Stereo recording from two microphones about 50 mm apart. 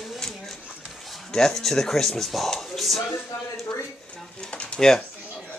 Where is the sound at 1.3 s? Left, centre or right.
Centre.